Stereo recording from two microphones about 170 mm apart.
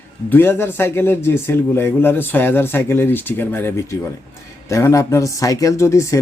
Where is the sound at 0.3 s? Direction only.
15° left (ahead or behind).